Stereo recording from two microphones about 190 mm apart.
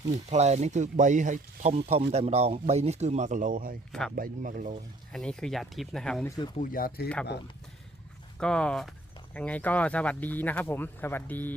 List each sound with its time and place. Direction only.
0.1 s speech: 35° right (ahead or behind)
5.1 s speech: 5° left (ahead or behind)
6.2 s speech: 20° left (ahead or behind)
6.6 s speech: 50° left (ahead or behind)
8.4 s speech: 5° left (ahead or behind)